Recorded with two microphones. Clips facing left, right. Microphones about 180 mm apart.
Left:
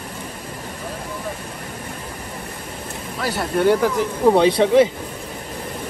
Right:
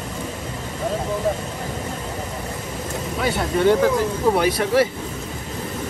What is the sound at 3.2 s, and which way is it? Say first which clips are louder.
Speech: even; 5° left (ahead or behind).